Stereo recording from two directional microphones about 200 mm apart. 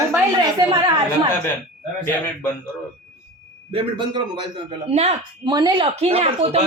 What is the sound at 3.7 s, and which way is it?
Speech, 25° right (ahead or behind).